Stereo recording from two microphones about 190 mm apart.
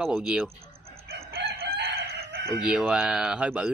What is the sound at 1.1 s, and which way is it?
Chicken, 55° right (ahead or behind).